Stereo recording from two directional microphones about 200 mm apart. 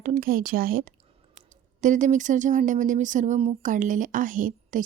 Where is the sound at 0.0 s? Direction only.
45° right (ahead or behind).